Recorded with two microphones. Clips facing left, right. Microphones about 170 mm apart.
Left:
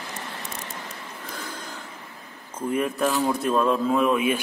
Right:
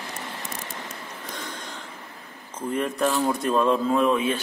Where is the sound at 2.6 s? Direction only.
10° left (ahead or behind).